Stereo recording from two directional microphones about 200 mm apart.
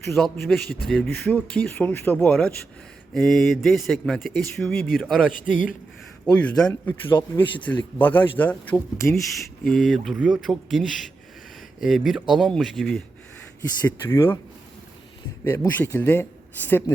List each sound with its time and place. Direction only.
0.2 s speech: centre (ahead or behind)
0.6 s a man's voice: 50° left (ahead or behind)
0.9 s speech: centre (ahead or behind)
6.6 s speech: 5° left (ahead or behind)
7.2 s speech: 20° left (ahead or behind)
7.7 s speech: 10° left (ahead or behind)
13.6 s speech: 10° left (ahead or behind)
15.4 s speech: 10° left (ahead or behind)